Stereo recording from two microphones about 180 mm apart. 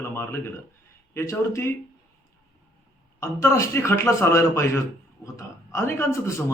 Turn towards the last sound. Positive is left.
turn(degrees=15)  # may be behind; listen again after turning